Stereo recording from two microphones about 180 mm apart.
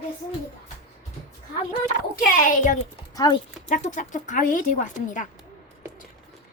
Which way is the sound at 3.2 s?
20° left (ahead or behind).